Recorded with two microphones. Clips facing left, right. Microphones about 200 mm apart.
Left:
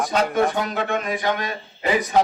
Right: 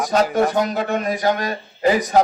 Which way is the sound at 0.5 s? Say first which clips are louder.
Right 4 dB; 40° right (ahead or behind).